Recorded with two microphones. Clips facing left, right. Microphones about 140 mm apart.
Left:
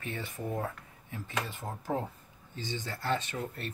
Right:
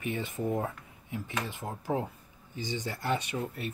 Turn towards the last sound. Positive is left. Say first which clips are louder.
# right 3 dB
turn(degrees=-5)  # may be behind; listen again after turning